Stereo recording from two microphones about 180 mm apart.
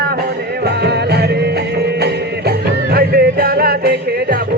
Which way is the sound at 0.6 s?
65° right (ahead or behind).